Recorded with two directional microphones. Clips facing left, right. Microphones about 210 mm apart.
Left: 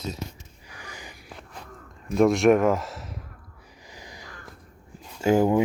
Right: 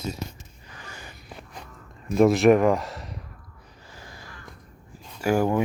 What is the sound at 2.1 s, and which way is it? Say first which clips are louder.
Speech: right 1 dB; centre (ahead or behind).